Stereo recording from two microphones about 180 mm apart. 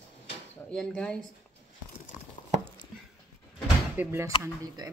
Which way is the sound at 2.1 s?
45° left (ahead or behind).